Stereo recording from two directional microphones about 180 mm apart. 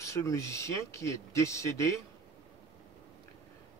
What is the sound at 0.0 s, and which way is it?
Speech, 15° left (ahead or behind).